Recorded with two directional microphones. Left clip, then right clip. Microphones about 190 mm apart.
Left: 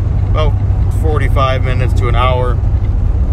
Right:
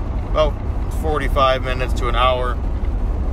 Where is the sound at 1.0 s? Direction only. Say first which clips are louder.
Left 1 dB; 25° right (ahead or behind).